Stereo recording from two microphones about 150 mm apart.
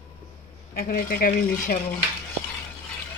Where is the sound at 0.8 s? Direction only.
75° left (ahead or behind).